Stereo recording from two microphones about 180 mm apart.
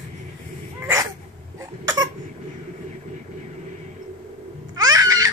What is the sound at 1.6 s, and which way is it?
Cough, 20° right (ahead or behind).